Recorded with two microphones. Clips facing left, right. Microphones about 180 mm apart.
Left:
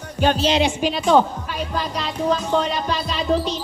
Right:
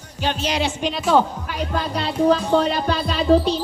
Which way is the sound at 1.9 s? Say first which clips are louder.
Right 5 dB; 30° right (ahead or behind).